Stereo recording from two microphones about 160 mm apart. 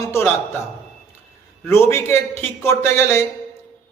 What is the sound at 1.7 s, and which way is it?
A man's voice, 15° left (ahead or behind).